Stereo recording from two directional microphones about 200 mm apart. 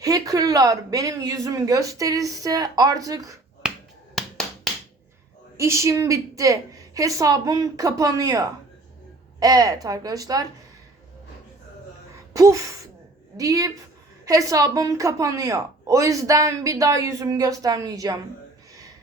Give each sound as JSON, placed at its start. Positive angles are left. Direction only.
{"t": 0.0, "sound": "speech", "side_deg": -15}
{"t": 3.6, "sound": "finger snapping", "side_deg": -5}
{"t": 5.5, "sound": "speech", "side_deg": -15}
{"t": 12.3, "sound": "gasp", "side_deg": -15}
{"t": 13.3, "sound": "speech", "side_deg": -15}